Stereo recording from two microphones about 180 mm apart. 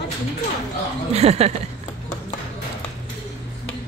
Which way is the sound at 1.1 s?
35° right (ahead or behind).